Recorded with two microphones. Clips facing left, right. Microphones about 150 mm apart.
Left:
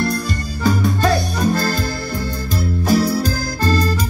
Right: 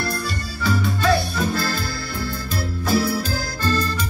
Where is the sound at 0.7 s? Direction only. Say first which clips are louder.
Left 3 dB; 45° left (ahead or behind).